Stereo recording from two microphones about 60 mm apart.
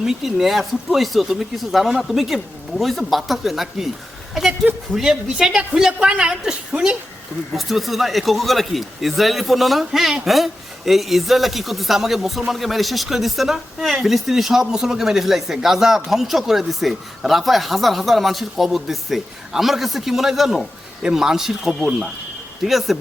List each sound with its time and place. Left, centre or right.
0.0 s speech: centre
4.9 s a woman's voice: centre
7.5 s a woman's voice: centre
21.8 s speech: right
22.6 s speech: centre